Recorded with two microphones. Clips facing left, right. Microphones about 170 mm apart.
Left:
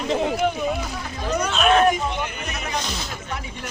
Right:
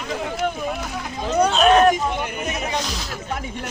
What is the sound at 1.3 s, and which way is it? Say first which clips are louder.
Speech: right 4 dB; 35° right (ahead or behind).